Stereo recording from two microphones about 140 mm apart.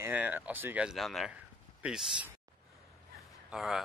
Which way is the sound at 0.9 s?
Centre (ahead or behind).